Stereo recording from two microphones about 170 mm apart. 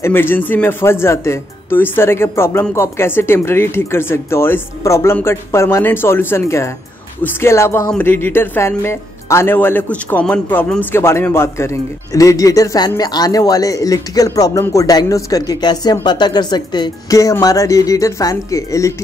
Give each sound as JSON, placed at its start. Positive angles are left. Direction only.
{"t": 0.0, "sound": "a man's voice", "side_deg": 15}